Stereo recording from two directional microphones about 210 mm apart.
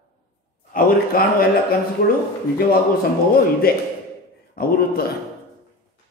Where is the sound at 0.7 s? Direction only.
45° left (ahead or behind).